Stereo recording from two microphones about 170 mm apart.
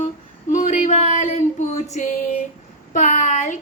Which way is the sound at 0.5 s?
45° left (ahead or behind).